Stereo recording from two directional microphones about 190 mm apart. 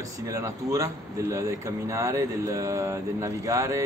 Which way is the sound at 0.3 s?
15° right (ahead or behind).